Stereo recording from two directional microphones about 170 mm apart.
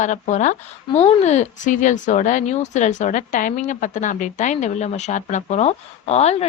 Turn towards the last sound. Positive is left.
turn(degrees=40)  # may be behind; listen again after turning